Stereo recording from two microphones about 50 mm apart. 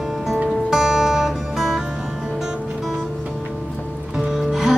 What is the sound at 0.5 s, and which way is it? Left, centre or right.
Music, centre.